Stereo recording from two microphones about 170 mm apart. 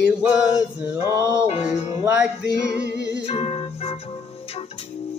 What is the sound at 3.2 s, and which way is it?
Music, 35° left (ahead or behind).